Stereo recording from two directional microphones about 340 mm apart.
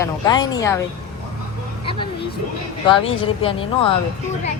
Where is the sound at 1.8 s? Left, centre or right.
Centre.